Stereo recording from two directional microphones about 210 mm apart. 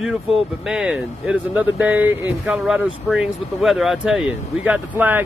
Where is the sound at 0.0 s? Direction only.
Centre (ahead or behind).